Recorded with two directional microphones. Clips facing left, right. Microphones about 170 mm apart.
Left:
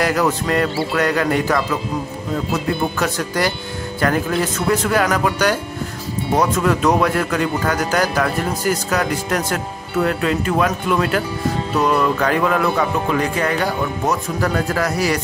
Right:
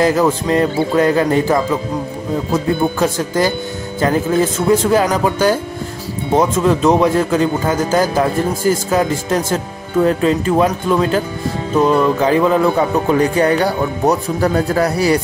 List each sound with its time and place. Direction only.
0.0 s speech: 25° right (ahead or behind)